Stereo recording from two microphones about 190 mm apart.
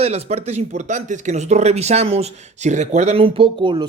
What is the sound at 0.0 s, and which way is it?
A man's voice, 35° right (ahead or behind).